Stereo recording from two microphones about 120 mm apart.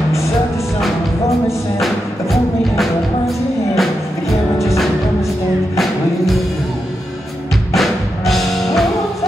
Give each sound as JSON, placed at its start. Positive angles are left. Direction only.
{"t": 3.7, "sound": "music", "side_deg": 0}
{"t": 7.7, "sound": "music", "side_deg": 0}